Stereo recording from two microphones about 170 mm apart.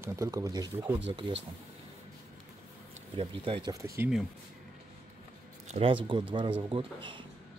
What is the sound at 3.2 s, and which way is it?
Speech, 30° right (ahead or behind).